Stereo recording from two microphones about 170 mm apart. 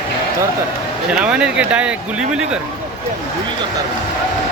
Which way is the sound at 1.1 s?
5° right (ahead or behind).